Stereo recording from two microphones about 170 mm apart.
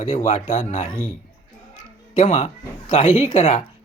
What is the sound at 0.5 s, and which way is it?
Speech, 50° left (ahead or behind).